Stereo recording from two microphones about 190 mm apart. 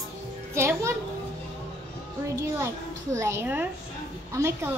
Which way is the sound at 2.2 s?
15° right (ahead or behind).